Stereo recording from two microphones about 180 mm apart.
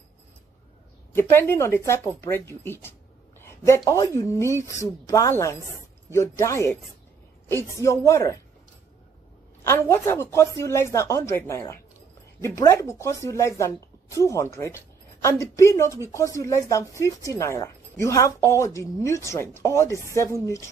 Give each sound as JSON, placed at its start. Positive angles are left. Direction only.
{"t": 1.1, "sound": "a woman's voice", "side_deg": 10}
{"t": 9.6, "sound": "a woman's voice", "side_deg": 15}